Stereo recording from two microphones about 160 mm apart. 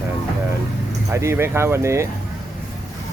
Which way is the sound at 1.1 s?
15° right (ahead or behind).